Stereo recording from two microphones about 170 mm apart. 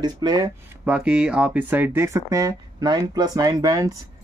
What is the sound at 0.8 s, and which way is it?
Speech, 5° right (ahead or behind).